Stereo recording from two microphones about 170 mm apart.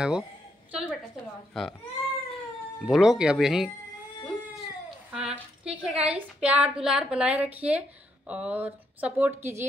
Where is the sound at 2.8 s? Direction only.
Centre (ahead or behind).